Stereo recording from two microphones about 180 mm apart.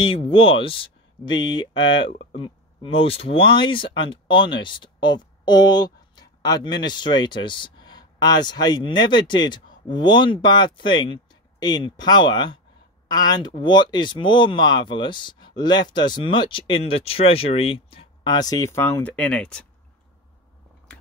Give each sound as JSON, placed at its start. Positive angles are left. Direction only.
{"t": 0.0, "sound": "speech", "side_deg": 30}